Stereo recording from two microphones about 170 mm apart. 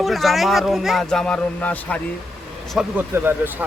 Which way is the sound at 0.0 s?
Centre (ahead or behind).